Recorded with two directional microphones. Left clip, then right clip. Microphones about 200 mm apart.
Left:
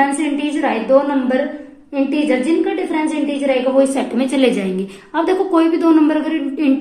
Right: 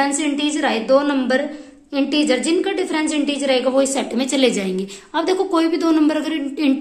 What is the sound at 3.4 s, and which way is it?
A woman's voice, 25° right (ahead or behind).